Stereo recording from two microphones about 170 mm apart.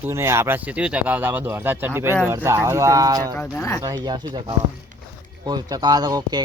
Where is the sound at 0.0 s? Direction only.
15° right (ahead or behind).